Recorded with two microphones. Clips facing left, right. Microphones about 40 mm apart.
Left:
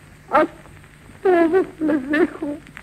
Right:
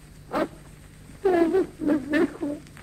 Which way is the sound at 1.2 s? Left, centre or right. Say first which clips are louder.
Left 5 dB; left.